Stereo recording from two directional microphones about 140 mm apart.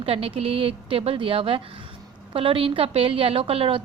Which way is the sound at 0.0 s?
45° right (ahead or behind).